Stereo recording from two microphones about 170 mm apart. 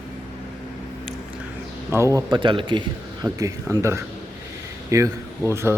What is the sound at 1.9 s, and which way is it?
A man's voice, 20° right (ahead or behind).